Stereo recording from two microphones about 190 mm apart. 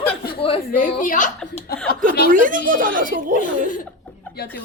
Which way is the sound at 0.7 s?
45° left (ahead or behind).